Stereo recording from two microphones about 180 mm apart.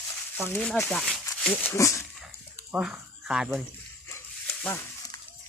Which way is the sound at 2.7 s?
5° right (ahead or behind).